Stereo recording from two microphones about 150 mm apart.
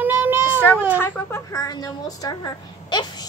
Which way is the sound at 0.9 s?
15° left (ahead or behind).